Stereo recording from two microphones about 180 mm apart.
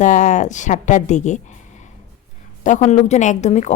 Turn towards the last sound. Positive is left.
turn(degrees=40)  # may be behind; listen again after turning